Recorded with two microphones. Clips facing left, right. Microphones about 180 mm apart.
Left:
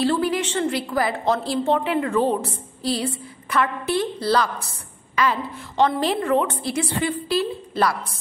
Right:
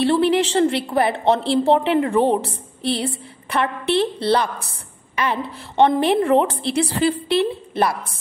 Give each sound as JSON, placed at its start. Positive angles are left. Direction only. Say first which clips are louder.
{"t": 0.0, "sound": "a woman's voice", "louder": "right 4 dB", "side_deg": -25}